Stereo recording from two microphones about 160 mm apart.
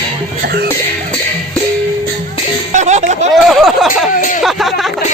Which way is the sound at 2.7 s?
45° right (ahead or behind).